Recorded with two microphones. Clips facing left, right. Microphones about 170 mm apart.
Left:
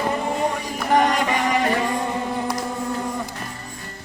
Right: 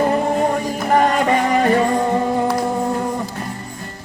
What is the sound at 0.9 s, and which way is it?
Music, 40° right (ahead or behind).